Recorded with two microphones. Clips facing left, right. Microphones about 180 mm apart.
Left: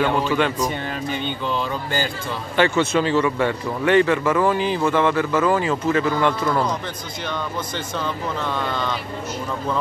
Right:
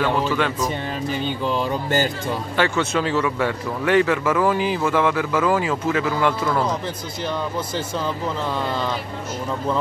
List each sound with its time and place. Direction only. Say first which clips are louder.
0.0 s speech: left 1 dB; centre (ahead or behind)
1.0 s mantra: right 2 dB; 35° right (ahead or behind)
2.5 s speech: left 4 dB; centre (ahead or behind)
8.5 s mantra: right 1 dB; 30° right (ahead or behind)